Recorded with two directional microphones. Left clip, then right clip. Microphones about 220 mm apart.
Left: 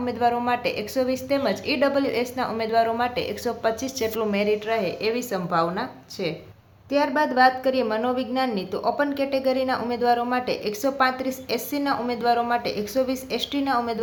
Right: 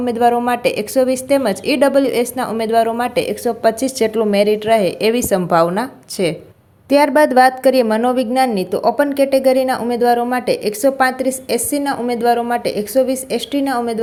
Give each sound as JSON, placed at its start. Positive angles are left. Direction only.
{"t": 0.0, "sound": "speech", "side_deg": -30}